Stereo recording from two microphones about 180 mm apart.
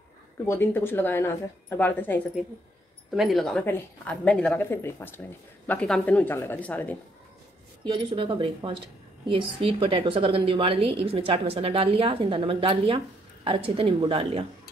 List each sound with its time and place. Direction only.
0.5 s speech: 10° left (ahead or behind)
3.2 s speech: centre (ahead or behind)
7.8 s a woman's voice: 25° right (ahead or behind)